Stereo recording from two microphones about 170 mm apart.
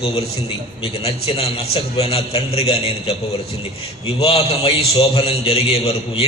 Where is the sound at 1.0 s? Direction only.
35° left (ahead or behind).